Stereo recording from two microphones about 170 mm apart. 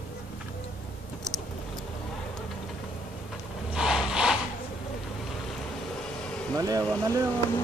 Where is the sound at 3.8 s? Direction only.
5° right (ahead or behind).